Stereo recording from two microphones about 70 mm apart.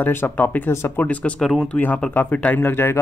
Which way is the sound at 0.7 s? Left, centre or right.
Left.